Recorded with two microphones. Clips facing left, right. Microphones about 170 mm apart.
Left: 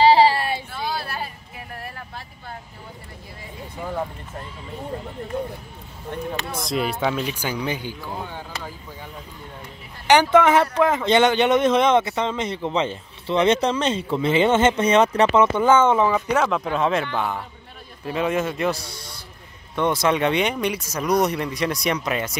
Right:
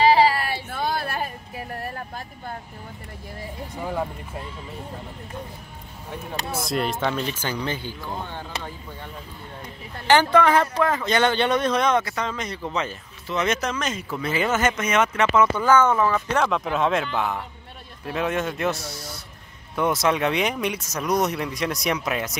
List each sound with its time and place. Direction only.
0.0 s a sound: 30° left (ahead or behind)
0.7 s vehicle: 50° right (ahead or behind)
6.0 s speech: centre (ahead or behind)
10.0 s speech: 20° left (ahead or behind)
16.3 s speech: centre (ahead or behind)